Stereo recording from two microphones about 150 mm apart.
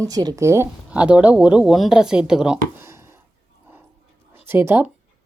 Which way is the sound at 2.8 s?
15° right (ahead or behind).